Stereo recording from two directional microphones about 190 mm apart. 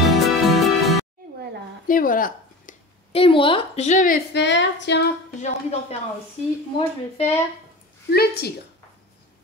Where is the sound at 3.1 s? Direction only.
30° left (ahead or behind).